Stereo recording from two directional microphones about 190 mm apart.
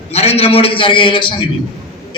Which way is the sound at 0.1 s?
35° left (ahead or behind).